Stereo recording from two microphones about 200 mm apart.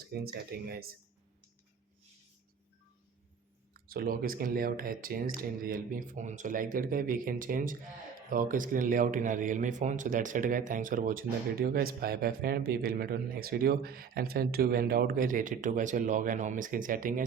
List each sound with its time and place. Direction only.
0.0 s a sound: 50° right (ahead or behind)
0.5 s speech: 50° right (ahead or behind)
3.8 s speech: 50° right (ahead or behind)